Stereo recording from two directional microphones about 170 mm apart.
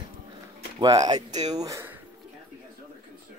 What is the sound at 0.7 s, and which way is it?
Speech, 20° right (ahead or behind).